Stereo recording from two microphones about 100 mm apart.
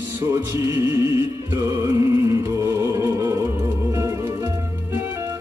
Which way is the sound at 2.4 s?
30° right (ahead or behind).